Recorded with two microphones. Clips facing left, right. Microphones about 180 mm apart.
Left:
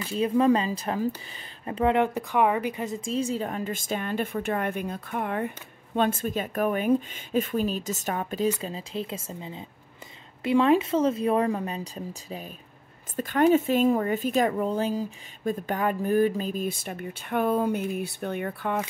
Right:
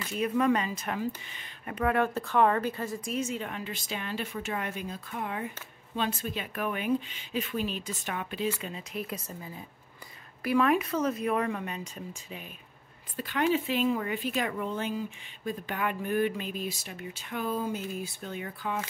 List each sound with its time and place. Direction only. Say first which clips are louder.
0.0 s a woman's voice: left 5 dB; 30° left (ahead or behind)
1.7 s a woman's voice: left 4 dB; 25° left (ahead or behind); by 18.9 s 60° left (ahead or behind)